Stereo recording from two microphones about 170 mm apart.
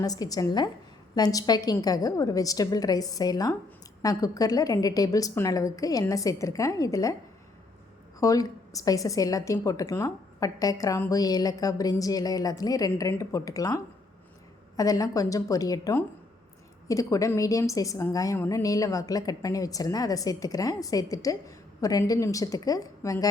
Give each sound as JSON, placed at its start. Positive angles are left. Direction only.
{"t": 0.0, "sound": "a woman's voice", "side_deg": 20}
{"t": 8.2, "sound": "a woman's voice", "side_deg": 20}